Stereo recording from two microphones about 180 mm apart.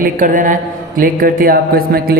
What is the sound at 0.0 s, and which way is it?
A man's voice, 45° right (ahead or behind).